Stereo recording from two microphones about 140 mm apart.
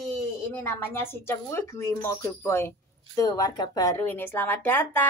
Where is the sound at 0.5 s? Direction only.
15° left (ahead or behind).